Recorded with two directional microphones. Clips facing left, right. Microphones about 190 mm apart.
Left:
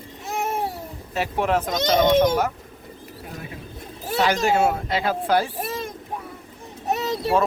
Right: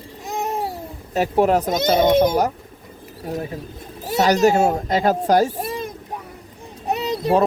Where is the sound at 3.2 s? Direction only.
40° right (ahead or behind).